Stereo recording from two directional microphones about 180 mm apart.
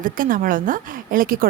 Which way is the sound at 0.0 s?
50° right (ahead or behind).